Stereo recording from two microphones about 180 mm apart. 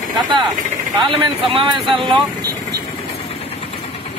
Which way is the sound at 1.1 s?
30° right (ahead or behind).